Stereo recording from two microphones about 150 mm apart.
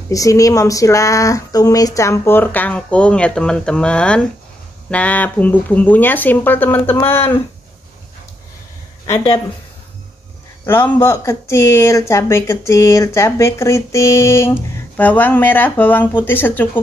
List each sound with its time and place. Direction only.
0.1 s speech: 20° left (ahead or behind)
10.6 s speech: 15° left (ahead or behind)